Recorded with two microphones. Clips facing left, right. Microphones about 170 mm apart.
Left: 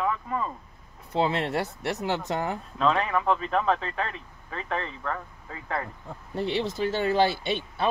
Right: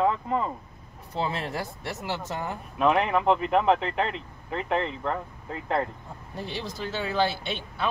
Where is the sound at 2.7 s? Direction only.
15° right (ahead or behind).